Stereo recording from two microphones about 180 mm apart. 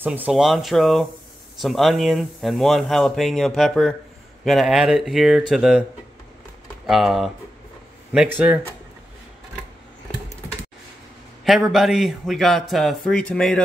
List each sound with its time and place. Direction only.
0.0 s speech: 10° right (ahead or behind)
6.9 s speech: centre (ahead or behind)
11.4 s speech: centre (ahead or behind)